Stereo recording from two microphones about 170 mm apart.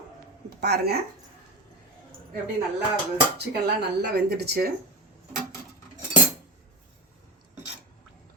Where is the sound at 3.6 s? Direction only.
80° right.